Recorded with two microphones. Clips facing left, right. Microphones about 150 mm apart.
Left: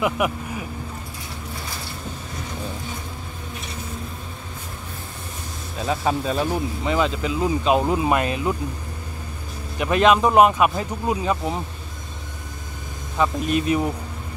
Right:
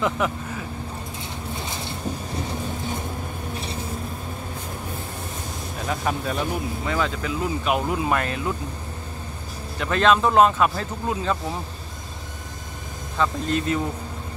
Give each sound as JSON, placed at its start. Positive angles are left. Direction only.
{"t": 0.0, "sound": "speech", "side_deg": 15}
{"t": 1.5, "sound": "a sound", "side_deg": -20}
{"t": 5.9, "sound": "speech", "side_deg": 25}
{"t": 9.8, "sound": "speech", "side_deg": 15}
{"t": 13.2, "sound": "speech", "side_deg": 15}